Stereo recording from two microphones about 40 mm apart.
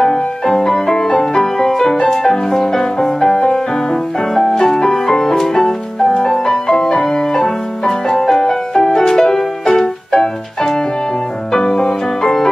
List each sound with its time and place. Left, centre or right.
0.0 s music: centre